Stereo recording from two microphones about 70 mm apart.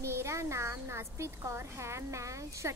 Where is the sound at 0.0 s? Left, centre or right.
Right.